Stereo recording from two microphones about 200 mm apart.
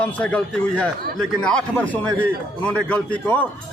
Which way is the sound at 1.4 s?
5° left (ahead or behind).